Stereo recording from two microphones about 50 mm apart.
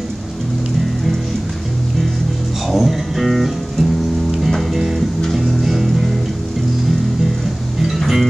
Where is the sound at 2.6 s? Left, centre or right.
Centre.